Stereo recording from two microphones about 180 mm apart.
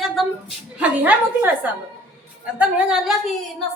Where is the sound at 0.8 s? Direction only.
10° right (ahead or behind).